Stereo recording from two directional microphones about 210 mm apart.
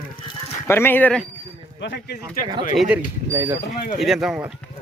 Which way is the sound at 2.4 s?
40° left (ahead or behind).